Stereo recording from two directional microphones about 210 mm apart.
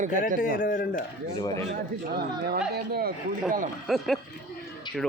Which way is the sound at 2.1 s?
50° right (ahead or behind).